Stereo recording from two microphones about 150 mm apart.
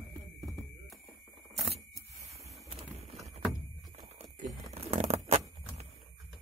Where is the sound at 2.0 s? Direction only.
Centre (ahead or behind).